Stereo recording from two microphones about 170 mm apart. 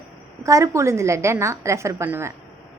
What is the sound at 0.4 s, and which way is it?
A woman's voice, 20° right (ahead or behind).